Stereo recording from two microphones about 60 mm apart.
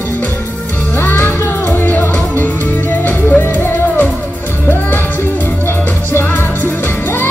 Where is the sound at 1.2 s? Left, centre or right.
Left.